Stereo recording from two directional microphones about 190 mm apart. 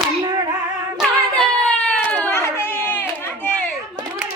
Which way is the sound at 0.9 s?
5° left (ahead or behind).